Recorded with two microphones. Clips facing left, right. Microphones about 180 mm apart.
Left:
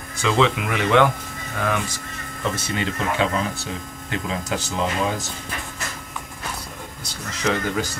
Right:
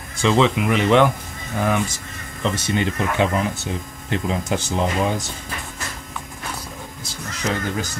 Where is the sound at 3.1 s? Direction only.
20° right (ahead or behind).